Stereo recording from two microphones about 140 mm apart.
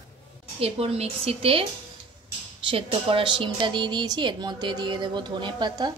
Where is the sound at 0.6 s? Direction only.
45° right (ahead or behind).